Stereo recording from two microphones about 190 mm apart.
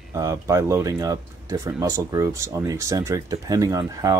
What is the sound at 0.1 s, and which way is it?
Speech, 15° right (ahead or behind).